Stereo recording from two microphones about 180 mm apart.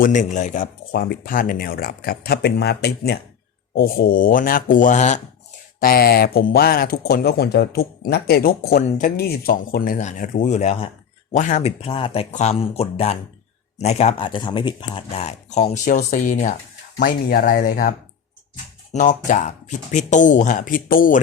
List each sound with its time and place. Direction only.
0.0 s speech: 45° left (ahead or behind)
0.9 s speech: 65° left (ahead or behind); by 5.2 s 40° left (ahead or behind)
5.8 s speech: 60° left (ahead or behind)
18.9 s speech: 45° left (ahead or behind)